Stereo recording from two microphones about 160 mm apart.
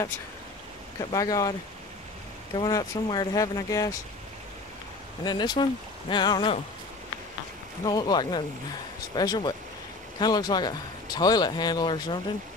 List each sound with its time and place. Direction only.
1.1 s speech: 20° left (ahead or behind)
2.6 s speech: 25° left (ahead or behind)
5.2 s speech: 25° left (ahead or behind)
7.8 s speech: 25° left (ahead or behind)